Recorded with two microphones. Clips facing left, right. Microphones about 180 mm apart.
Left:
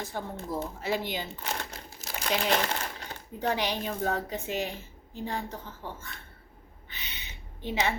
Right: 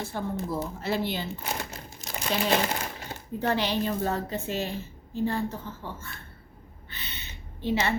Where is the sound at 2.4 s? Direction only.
10° right (ahead or behind).